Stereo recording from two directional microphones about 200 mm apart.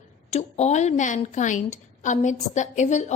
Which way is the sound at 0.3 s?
35° left (ahead or behind).